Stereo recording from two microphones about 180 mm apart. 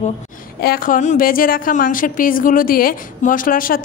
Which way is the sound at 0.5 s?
55° left (ahead or behind).